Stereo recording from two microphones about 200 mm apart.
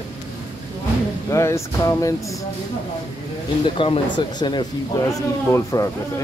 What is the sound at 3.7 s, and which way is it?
A man's voice, 25° left (ahead or behind).